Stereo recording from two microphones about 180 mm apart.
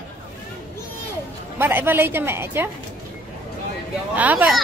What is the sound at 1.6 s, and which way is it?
A woman's voice, 10° right (ahead or behind).